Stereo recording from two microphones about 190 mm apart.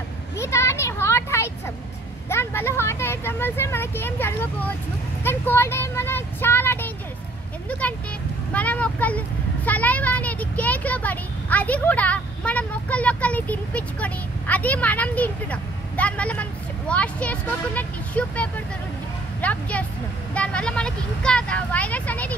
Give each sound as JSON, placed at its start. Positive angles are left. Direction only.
{"t": 0.4, "sound": "a sound", "side_deg": 15}
{"t": 2.2, "sound": "speech", "side_deg": 10}
{"t": 8.5, "sound": "speech", "side_deg": 5}